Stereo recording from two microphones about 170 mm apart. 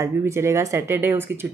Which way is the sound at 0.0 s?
15° right (ahead or behind).